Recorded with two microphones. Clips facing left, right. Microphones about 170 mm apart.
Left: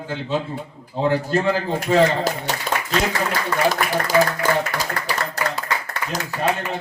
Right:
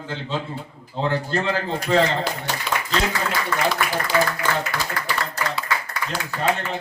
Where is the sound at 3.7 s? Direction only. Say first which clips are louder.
Left 3 dB; 45° left (ahead or behind).